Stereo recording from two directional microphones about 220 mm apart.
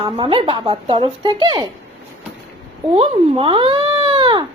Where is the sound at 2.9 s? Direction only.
25° right (ahead or behind).